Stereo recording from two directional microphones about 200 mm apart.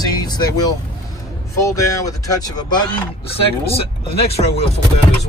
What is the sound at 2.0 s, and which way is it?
Speech, 20° left (ahead or behind).